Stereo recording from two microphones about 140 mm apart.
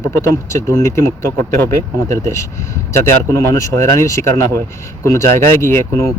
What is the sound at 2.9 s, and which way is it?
Speech, 20° left (ahead or behind).